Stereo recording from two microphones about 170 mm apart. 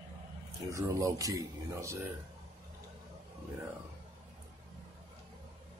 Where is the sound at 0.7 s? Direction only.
20° right (ahead or behind).